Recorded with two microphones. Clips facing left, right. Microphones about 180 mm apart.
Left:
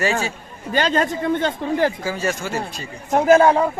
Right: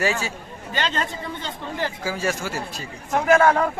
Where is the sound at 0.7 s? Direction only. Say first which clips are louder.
Left 7 dB; 45° left (ahead or behind).